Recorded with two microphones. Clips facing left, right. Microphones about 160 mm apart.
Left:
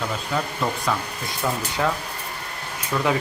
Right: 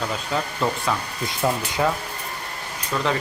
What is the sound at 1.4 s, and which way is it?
Speech, 25° right (ahead or behind).